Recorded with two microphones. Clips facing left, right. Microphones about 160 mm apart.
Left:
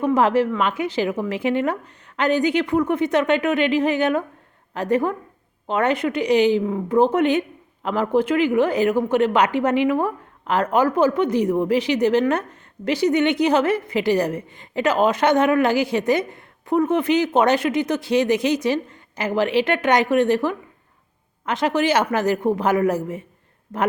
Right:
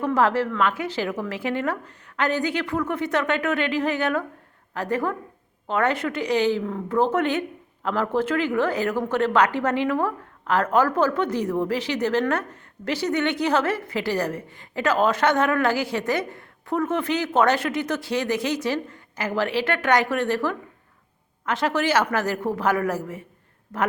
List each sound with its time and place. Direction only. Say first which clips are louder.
0.0 s a woman's voice: left 4 dB; 15° left (ahead or behind)